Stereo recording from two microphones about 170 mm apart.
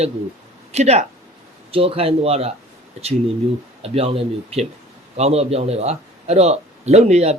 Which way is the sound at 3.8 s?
35° right (ahead or behind).